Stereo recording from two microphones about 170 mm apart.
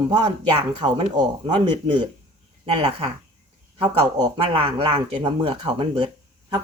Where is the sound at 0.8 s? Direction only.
25° right (ahead or behind).